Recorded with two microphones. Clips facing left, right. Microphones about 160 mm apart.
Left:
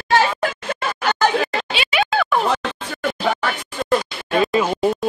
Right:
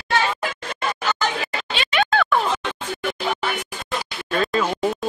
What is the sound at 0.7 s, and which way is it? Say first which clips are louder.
Chatter: left 3 dB; 70° left (ahead or behind).